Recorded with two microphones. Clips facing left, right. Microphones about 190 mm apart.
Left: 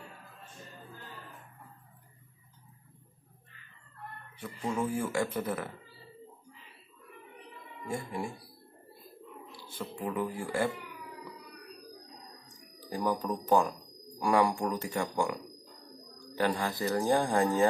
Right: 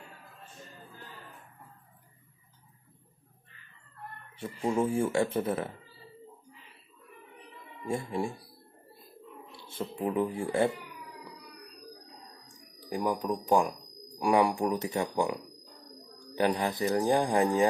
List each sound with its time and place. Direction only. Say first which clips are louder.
4.4 s speech: right 4 dB; 25° right (ahead or behind)
7.9 s speech: right 4 dB; 25° right (ahead or behind)
9.7 s speech: right 4 dB; 25° right (ahead or behind)
12.9 s speech: right 1 dB; 10° right (ahead or behind)
16.3 s speech: right 3 dB; 20° right (ahead or behind)